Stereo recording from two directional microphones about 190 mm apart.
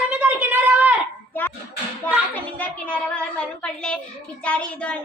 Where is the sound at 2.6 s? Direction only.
5° left (ahead or behind).